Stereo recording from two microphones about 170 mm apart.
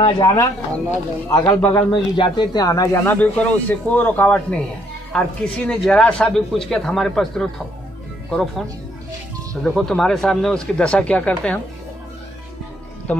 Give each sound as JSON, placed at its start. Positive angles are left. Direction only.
{"t": 0.2, "sound": "speech", "side_deg": 20}
{"t": 1.9, "sound": "speech", "side_deg": 25}